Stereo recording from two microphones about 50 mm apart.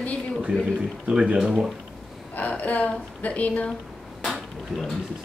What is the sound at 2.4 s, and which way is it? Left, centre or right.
A woman's voice, left.